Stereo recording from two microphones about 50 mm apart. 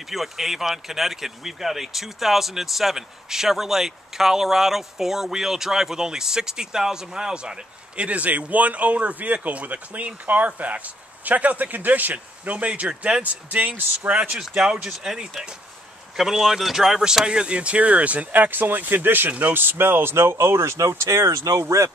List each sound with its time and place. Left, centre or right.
0.1 s speech: centre; by 14.1 s right
14.5 s speech: centre
16.2 s speech: centre
17.0 s speech: centre; by 21.8 s right